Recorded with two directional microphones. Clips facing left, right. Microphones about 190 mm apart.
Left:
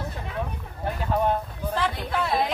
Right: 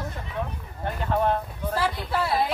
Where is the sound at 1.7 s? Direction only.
5° right (ahead or behind).